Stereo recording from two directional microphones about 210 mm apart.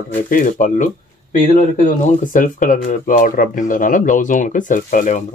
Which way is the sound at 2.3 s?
40° left (ahead or behind).